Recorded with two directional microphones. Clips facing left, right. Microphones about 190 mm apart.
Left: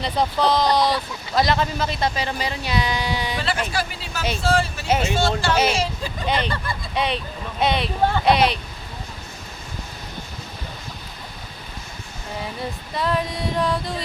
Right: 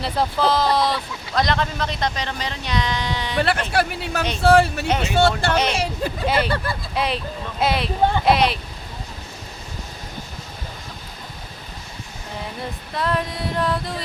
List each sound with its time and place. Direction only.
0.0 s speech: 5° right (ahead or behind)
3.3 s speech: 60° right (ahead or behind)
6.2 s speech: 5° right (ahead or behind)
12.9 s speech: centre (ahead or behind)